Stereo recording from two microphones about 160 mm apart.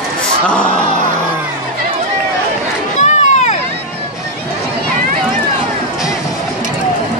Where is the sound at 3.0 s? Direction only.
45° left (ahead or behind).